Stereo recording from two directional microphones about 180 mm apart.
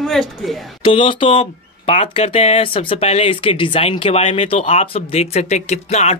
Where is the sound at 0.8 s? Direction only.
30° left (ahead or behind).